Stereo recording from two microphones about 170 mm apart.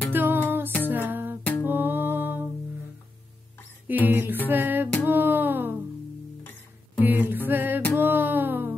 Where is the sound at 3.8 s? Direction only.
10° right (ahead or behind).